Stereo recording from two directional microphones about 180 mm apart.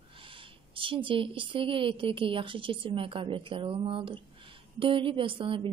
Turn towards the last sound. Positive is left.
turn(degrees=-30)  # may be behind; listen again after turning